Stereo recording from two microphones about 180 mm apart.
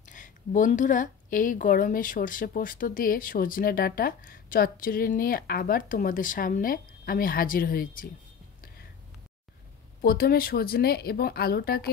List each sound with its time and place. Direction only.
0.0 s a woman's voice: 45° left (ahead or behind)
10.0 s speech: 55° left (ahead or behind)